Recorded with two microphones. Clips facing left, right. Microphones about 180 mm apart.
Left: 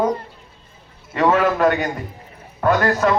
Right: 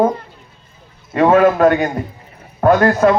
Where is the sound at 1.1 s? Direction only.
50° right (ahead or behind).